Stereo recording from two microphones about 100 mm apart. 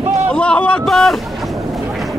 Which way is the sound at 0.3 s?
10° left (ahead or behind).